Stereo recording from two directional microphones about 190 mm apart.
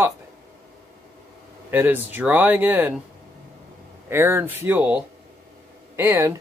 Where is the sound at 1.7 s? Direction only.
10° right (ahead or behind).